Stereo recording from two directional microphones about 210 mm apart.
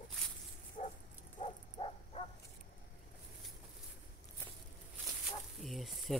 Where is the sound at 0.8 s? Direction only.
35° left (ahead or behind).